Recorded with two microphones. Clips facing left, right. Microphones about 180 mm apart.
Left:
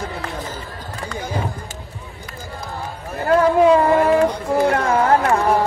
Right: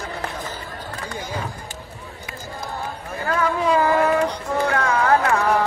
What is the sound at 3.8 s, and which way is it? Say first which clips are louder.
Child singing: left 3 dB; 30° left (ahead or behind).